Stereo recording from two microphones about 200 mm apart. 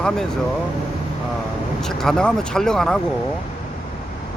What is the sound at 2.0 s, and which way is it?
Speech, 5° left (ahead or behind).